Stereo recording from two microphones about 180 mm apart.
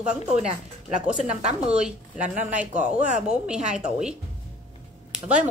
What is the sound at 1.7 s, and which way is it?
A woman's voice, 5° right (ahead or behind).